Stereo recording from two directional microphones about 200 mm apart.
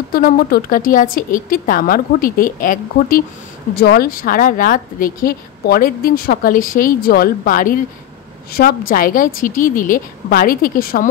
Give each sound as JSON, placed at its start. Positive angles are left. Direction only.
{"t": 0.1, "sound": "speech", "side_deg": 50}
{"t": 3.7, "sound": "speech", "side_deg": 50}